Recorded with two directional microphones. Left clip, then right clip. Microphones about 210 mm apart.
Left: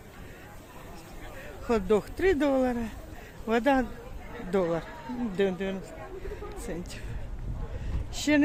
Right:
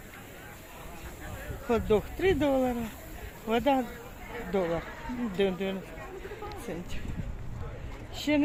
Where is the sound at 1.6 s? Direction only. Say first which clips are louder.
Left 1 dB; 5° left (ahead or behind).